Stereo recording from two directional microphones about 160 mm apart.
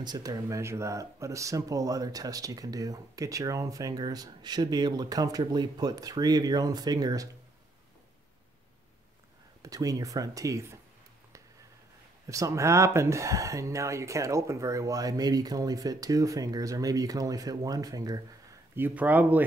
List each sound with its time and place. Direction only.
0.0 s speech: 25° right (ahead or behind)
9.6 s speech: 20° right (ahead or behind)
12.3 s speech: 20° right (ahead or behind)
18.8 s speech: 10° right (ahead or behind)